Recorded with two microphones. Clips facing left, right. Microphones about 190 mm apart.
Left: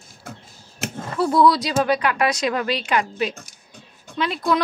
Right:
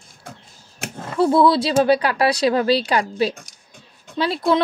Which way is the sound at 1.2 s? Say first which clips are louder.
Right 2 dB; 25° right (ahead or behind).